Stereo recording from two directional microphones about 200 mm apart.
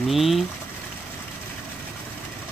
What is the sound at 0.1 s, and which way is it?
Boiling, centre (ahead or behind).